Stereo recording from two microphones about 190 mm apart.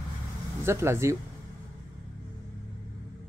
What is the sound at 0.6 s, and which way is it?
Speech, 15° right (ahead or behind).